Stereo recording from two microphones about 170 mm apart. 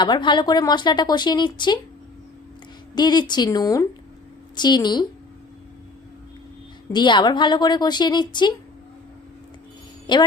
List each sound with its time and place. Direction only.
0.0 s speech: 25° left (ahead or behind)
2.9 s speech: 25° left (ahead or behind)
6.9 s speech: 25° left (ahead or behind)
10.1 s a woman's voice: 25° left (ahead or behind)